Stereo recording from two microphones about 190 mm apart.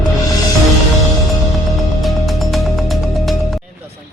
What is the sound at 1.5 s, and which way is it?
Music, centre (ahead or behind).